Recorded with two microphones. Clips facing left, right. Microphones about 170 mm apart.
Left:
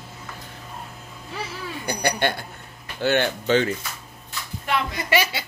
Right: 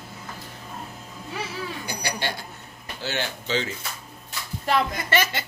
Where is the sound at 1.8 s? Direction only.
55° left (ahead or behind).